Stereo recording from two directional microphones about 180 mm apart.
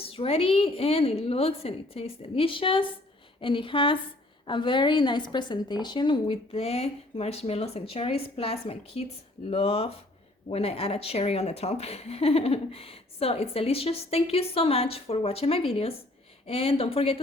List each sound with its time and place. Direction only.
0.0 s a woman's voice: 30° left (ahead or behind)